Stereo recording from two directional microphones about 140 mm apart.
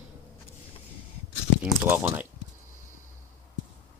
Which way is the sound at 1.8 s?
15° right (ahead or behind).